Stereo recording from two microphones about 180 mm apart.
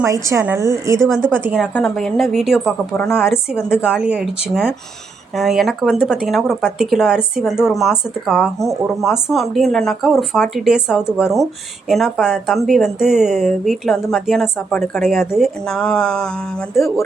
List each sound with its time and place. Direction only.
0.0 s a woman's voice: 15° right (ahead or behind)
2.9 s speech: 10° left (ahead or behind)
3.5 s speech: 5° right (ahead or behind)